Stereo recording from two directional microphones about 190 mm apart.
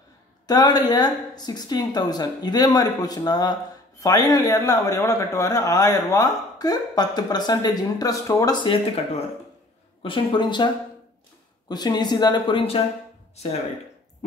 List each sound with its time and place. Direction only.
0.5 s speech: 20° left (ahead or behind)
11.7 s speech: 20° left (ahead or behind)